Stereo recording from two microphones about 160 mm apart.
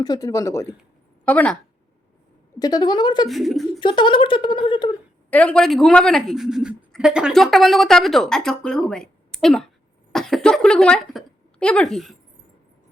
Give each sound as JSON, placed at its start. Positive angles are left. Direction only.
{"t": 0.0, "sound": "a woman's voice", "side_deg": 20}
{"t": 2.6, "sound": "speech", "side_deg": 25}
{"t": 3.2, "sound": "a woman's voice", "side_deg": 0}
{"t": 3.8, "sound": "speech", "side_deg": 30}
{"t": 5.3, "sound": "a woman's voice", "side_deg": 10}
{"t": 10.1, "sound": "cough", "side_deg": 5}
{"t": 11.6, "sound": "a woman's voice", "side_deg": 5}